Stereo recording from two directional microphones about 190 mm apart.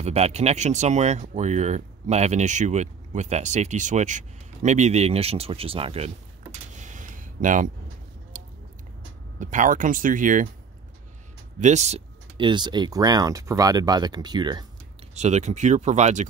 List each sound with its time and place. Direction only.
0.0 s speech: 35° right (ahead or behind)
6.7 s a sound: 40° right (ahead or behind)
9.4 s speech: 40° right (ahead or behind)
11.6 s speech: 35° right (ahead or behind)
15.1 s speech: 35° right (ahead or behind)